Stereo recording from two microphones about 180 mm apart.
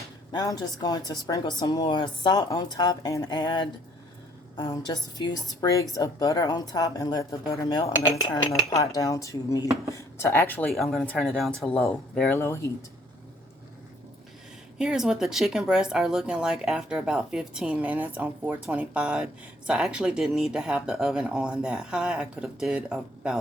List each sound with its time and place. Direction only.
0.3 s a woman's voice: 20° left (ahead or behind)
14.8 s speech: 5° right (ahead or behind)